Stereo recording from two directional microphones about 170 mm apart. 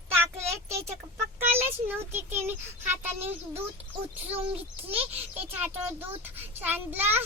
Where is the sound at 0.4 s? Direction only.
40° right (ahead or behind).